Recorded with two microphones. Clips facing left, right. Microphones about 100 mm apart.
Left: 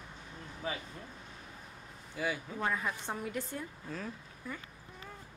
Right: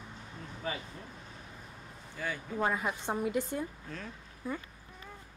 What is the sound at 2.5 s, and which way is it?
A woman's voice, 20° right (ahead or behind).